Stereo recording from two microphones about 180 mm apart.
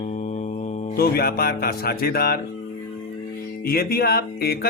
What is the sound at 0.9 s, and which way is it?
Speech, 60° left (ahead or behind).